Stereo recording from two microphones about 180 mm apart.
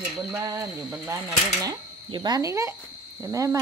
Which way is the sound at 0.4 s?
15° right (ahead or behind).